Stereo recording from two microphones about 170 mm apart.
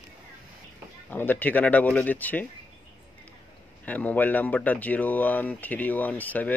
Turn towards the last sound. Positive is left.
turn(degrees=10)  # may be behind; listen again after turning